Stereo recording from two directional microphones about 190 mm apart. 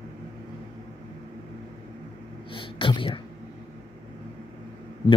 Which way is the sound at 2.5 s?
25° left (ahead or behind).